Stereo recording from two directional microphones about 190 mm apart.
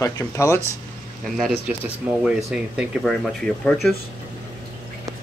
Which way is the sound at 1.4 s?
Centre (ahead or behind).